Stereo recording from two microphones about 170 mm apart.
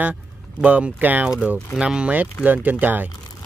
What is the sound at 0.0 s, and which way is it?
Speech, 10° right (ahead or behind).